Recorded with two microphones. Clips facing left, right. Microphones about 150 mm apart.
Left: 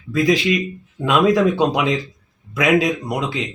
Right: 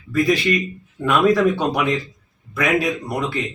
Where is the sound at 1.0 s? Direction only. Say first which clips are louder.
Left 1 dB; 15° left (ahead or behind).